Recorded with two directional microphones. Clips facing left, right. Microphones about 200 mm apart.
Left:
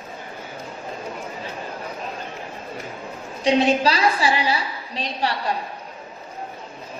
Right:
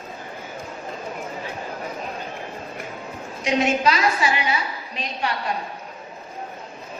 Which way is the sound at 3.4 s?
30° left (ahead or behind).